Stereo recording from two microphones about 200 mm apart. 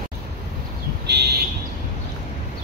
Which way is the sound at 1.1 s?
55° right (ahead or behind).